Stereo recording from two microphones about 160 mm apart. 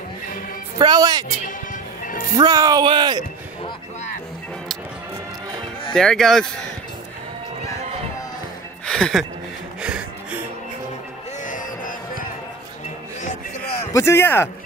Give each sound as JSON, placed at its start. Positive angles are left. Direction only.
{"t": 0.7, "sound": "speech", "side_deg": -25}
{"t": 1.7, "sound": "music", "side_deg": 60}
{"t": 2.3, "sound": "speech", "side_deg": -25}
{"t": 5.9, "sound": "speech", "side_deg": 5}
{"t": 8.8, "sound": "a sound", "side_deg": 5}
{"t": 9.8, "sound": "music", "side_deg": -5}
{"t": 11.4, "sound": "music", "side_deg": 55}
{"t": 13.9, "sound": "speech", "side_deg": 15}